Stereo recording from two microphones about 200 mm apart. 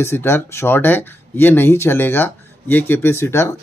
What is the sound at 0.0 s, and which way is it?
Speech, 10° left (ahead or behind).